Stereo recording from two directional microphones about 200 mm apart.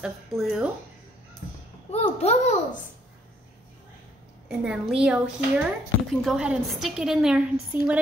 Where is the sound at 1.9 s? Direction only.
30° left (ahead or behind).